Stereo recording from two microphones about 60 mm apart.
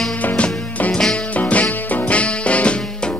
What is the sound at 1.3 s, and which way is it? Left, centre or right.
Music, left.